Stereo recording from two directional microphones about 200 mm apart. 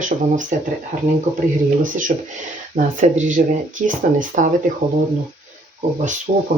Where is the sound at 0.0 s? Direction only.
40° right (ahead or behind).